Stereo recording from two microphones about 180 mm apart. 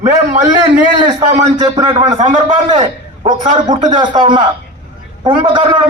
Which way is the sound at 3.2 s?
25° right (ahead or behind).